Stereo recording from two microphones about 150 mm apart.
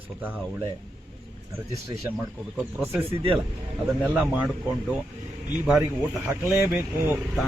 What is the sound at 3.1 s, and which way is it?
Speech, 40° right (ahead or behind).